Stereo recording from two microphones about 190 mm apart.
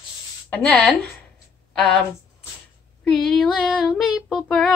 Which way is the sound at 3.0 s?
Centre (ahead or behind).